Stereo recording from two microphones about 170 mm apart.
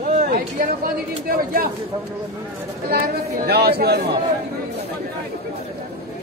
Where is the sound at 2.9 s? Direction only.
65° right (ahead or behind).